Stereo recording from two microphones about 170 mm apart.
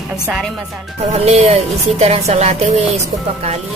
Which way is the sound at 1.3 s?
35° right (ahead or behind).